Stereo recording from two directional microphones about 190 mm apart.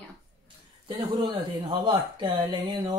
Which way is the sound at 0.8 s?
25° right (ahead or behind).